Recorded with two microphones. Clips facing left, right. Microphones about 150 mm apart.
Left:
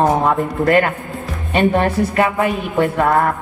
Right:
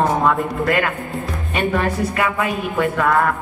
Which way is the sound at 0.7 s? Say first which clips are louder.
Left 8 dB; 40° left (ahead or behind).